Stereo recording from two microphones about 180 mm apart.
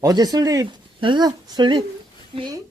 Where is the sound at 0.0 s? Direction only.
20° right (ahead or behind).